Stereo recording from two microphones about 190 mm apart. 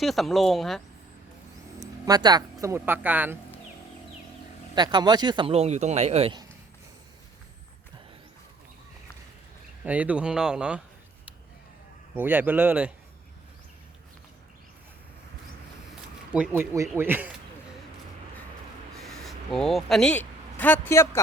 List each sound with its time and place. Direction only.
0.0 s speech: centre (ahead or behind)
2.0 s speech: 20° right (ahead or behind)
4.7 s speech: 20° right (ahead or behind)
9.8 s speech: 10° right (ahead or behind)
12.1 s speech: 10° right (ahead or behind)
16.3 s speech: 10° right (ahead or behind)
18.9 s a sound: centre (ahead or behind)
20.8 s speech: 15° left (ahead or behind)